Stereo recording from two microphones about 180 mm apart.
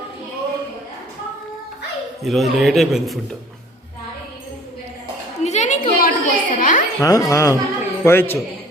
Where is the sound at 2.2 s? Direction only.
Centre (ahead or behind).